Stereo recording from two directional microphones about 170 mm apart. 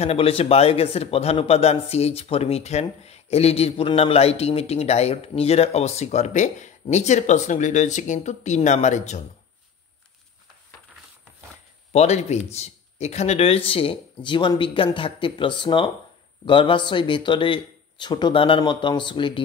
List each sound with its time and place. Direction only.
0.0 s a man's voice: 35° left (ahead or behind)
11.9 s a man's voice: 40° left (ahead or behind)